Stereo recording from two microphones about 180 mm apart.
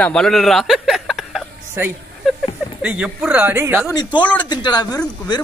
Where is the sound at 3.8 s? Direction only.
25° left (ahead or behind).